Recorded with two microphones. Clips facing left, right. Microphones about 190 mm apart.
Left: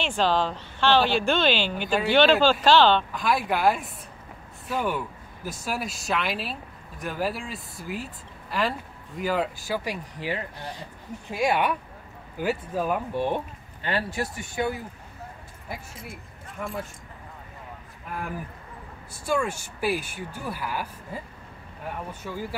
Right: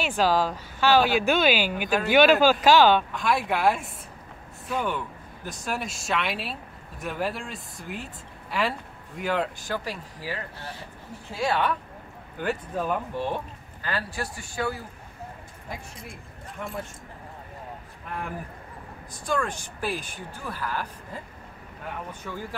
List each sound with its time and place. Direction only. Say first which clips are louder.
0.0 s speech: right 1 dB; 5° right (ahead or behind)
3.1 s speech: even; centre (ahead or behind)
10.2 s speech: left 3 dB; 20° left (ahead or behind)
13.8 s speech: left 3 dB; 25° left (ahead or behind)
15.7 s speech: left 1 dB; 5° left (ahead or behind)
19.1 s speech: left 2 dB; 10° left (ahead or behind)
22.2 s speech: left 2 dB; 10° left (ahead or behind)